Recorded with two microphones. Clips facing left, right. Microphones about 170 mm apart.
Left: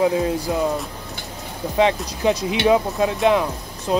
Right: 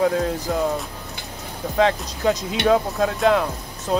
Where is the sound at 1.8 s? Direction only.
10° left (ahead or behind).